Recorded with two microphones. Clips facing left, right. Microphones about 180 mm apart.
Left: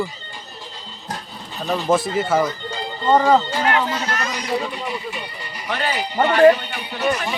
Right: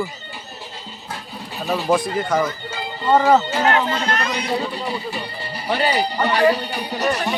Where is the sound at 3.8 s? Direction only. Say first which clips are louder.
Right 2 dB; 10° left (ahead or behind).